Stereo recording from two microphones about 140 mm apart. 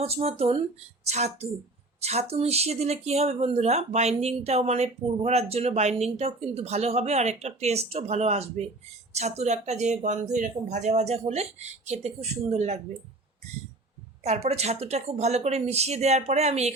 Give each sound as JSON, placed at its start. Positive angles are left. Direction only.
{"t": 0.0, "sound": "speech", "side_deg": -45}
{"t": 14.3, "sound": "speech", "side_deg": -50}